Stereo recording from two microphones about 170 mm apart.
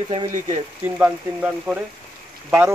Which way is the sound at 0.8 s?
10° right (ahead or behind).